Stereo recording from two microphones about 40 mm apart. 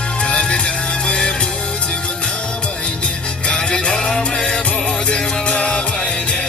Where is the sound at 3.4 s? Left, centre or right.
Left.